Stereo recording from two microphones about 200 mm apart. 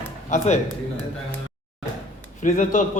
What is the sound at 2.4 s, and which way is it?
Speech, 40° left (ahead or behind).